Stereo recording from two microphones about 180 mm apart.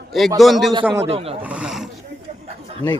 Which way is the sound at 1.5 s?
5° right (ahead or behind).